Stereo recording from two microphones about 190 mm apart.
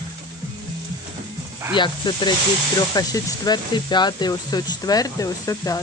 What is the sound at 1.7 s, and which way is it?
Speech, 25° left (ahead or behind).